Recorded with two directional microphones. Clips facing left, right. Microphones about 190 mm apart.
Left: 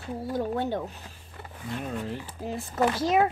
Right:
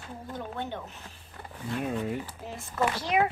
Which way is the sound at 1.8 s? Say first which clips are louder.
Right 3 dB; 10° right (ahead or behind).